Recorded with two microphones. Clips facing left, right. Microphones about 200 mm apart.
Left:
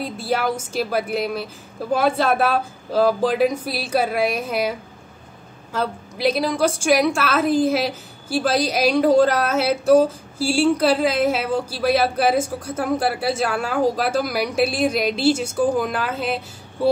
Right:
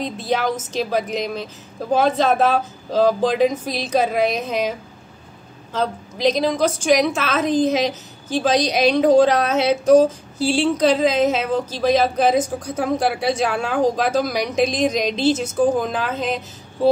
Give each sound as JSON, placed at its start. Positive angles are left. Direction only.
{"t": 0.0, "sound": "speech", "side_deg": 5}
{"t": 5.8, "sound": "speech", "side_deg": 10}